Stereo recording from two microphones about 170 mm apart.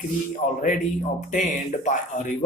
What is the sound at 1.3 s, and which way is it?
Speech, 45° left (ahead or behind).